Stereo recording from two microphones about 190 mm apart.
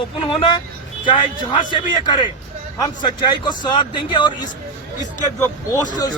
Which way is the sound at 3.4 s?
25° left (ahead or behind).